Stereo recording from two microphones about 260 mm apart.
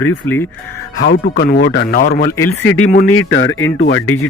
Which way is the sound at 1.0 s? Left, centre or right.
Left.